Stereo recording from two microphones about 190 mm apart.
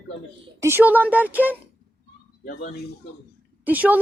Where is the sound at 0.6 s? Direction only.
10° right (ahead or behind).